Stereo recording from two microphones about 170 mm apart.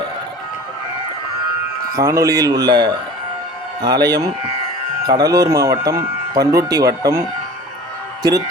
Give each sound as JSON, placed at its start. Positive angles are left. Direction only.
{"t": 1.9, "sound": "a man's voice", "side_deg": -20}
{"t": 5.0, "sound": "speech", "side_deg": -20}